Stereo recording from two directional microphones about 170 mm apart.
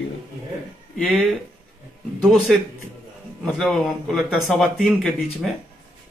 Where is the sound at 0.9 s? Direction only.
Centre (ahead or behind).